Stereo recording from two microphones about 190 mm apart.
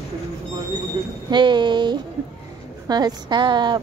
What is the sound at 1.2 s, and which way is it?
A woman's voice, 25° right (ahead or behind).